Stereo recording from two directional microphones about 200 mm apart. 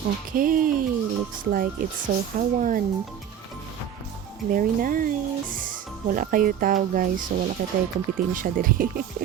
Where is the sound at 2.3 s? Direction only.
40° right (ahead or behind).